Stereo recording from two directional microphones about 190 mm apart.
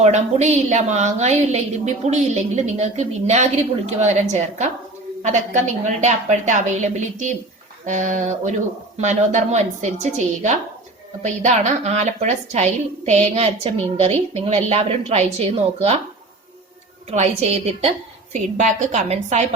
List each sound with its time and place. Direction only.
0.0 s a woman's voice: 35° right (ahead or behind)
17.1 s a woman's voice: 35° right (ahead or behind)